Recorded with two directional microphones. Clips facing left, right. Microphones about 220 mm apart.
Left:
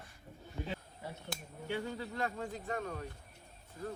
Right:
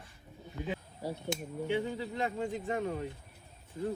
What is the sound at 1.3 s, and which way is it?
Speech, 20° right (ahead or behind).